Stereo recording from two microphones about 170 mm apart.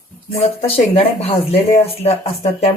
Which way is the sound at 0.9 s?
35° left (ahead or behind).